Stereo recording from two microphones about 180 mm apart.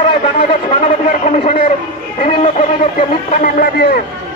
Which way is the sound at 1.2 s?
40° left (ahead or behind).